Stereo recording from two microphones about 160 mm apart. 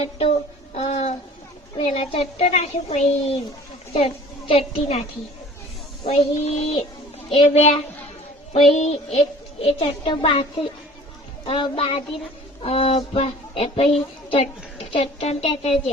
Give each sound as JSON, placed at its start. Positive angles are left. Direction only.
{"t": 0.0, "sound": "a sound", "side_deg": 40}
{"t": 1.8, "sound": "a woman's voice", "side_deg": 35}
{"t": 6.1, "sound": "a woman's voice", "side_deg": 40}